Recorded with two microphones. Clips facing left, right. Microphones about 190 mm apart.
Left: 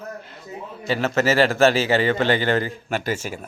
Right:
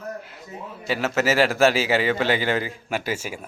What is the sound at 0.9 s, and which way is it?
Speech, 5° right (ahead or behind).